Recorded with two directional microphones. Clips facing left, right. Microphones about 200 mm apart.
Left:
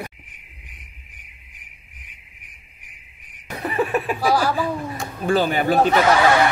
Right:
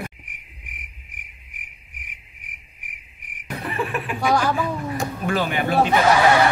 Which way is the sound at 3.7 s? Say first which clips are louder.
Left 6 dB; 40° left (ahead or behind).